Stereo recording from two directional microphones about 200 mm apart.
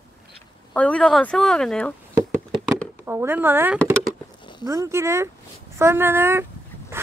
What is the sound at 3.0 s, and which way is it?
Speech, 10° right (ahead or behind).